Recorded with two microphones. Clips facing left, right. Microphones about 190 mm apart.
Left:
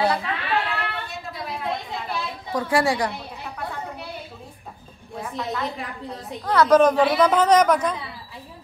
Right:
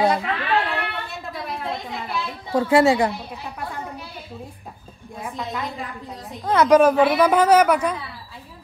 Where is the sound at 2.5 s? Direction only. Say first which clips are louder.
Right 5 dB; 25° right (ahead or behind).